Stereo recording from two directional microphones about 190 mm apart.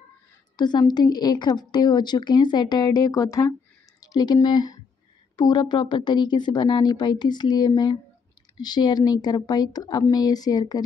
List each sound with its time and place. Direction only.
0.6 s a woman's voice: 20° left (ahead or behind)